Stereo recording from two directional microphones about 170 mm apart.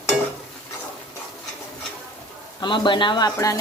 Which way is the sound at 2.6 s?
30° left (ahead or behind).